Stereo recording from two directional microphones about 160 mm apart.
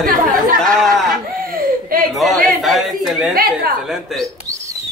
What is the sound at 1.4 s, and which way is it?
Laughter, 65° right (ahead or behind).